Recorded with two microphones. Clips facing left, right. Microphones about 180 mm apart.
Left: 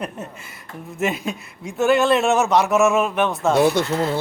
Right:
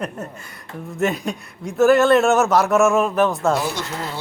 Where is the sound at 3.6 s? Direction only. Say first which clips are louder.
Left 8 dB; 55° left (ahead or behind).